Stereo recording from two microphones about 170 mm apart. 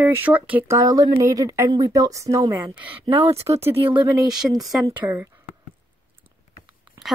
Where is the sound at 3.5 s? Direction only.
25° right (ahead or behind).